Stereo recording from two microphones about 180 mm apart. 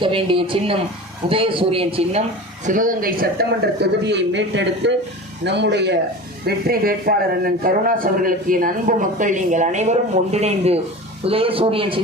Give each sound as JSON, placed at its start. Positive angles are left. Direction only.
{"t": 0.0, "sound": "a man's voice", "side_deg": -30}
{"t": 2.6, "sound": "speech", "side_deg": -50}
{"t": 6.4, "sound": "a man's voice", "side_deg": -55}